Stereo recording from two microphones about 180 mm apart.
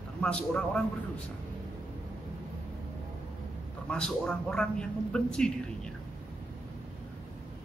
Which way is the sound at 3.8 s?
5° left (ahead or behind).